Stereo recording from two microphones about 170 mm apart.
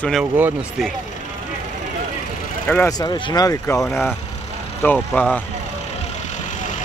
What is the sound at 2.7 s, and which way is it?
Speech, 20° left (ahead or behind).